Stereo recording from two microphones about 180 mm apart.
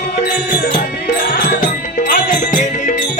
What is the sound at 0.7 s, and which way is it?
Music, 50° left (ahead or behind).